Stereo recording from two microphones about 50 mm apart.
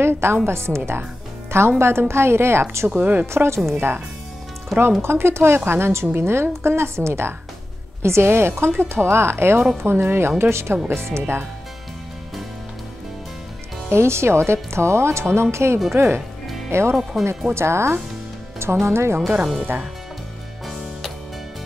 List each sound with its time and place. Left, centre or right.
0.0 s a woman's voice: right
3.0 s speech: right
3.3 s speech: right
4.7 s speech: centre
5.0 s speech: right
6.5 s speech: right
10.5 s speech: right
13.8 s speech: right
16.7 s speech: right
17.1 s speech: centre
17.5 s speech: right